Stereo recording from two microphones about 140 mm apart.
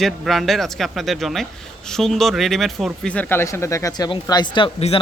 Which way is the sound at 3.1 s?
15° left (ahead or behind).